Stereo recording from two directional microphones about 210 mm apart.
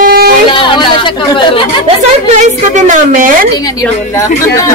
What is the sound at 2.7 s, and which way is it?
Speech, 35° right (ahead or behind).